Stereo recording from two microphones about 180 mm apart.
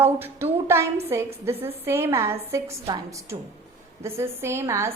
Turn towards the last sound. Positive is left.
turn(degrees=-15)  # may be behind; listen again after turning